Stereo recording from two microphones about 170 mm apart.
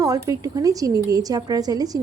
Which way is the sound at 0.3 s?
20° right (ahead or behind).